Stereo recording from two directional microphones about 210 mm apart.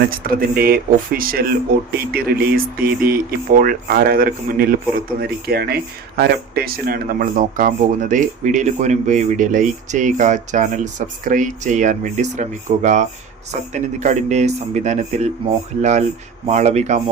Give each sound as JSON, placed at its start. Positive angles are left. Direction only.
{"t": 0.0, "sound": "speech", "side_deg": -45}